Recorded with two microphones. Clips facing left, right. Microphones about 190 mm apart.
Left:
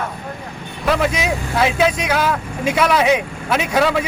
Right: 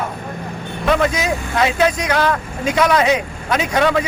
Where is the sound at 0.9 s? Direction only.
5° left (ahead or behind).